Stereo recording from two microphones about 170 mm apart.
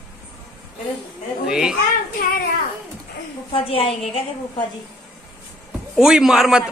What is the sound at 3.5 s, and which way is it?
Speech, 35° left (ahead or behind).